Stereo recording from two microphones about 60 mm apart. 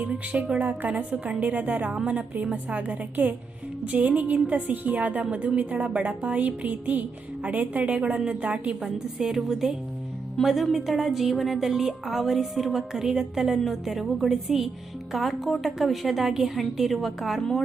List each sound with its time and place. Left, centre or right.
0.1 s speech: centre
0.6 s a woman's voice: right
8.8 s a woman's voice: centre